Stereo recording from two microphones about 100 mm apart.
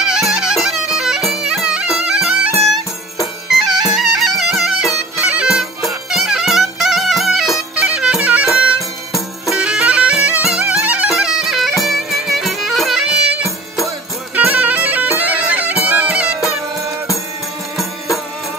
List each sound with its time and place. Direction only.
0.0 s music: 5° right (ahead or behind)
5.2 s clarinet: 10° right (ahead or behind)
7.9 s music: 10° right (ahead or behind)
14.3 s bagpipes: 15° right (ahead or behind)